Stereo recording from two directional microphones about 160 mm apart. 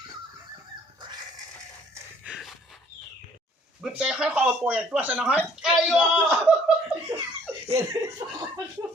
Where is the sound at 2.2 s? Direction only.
5° right (ahead or behind).